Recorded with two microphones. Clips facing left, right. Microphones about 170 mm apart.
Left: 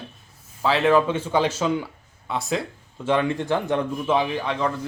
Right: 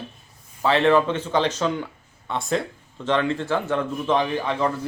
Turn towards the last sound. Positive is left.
turn(degrees=-5)  # may be behind; listen again after turning